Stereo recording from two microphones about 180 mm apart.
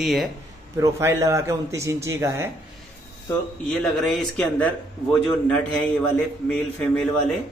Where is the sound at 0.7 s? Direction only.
15° right (ahead or behind).